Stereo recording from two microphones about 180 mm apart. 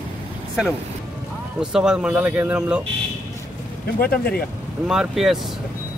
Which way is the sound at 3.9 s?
60° left (ahead or behind).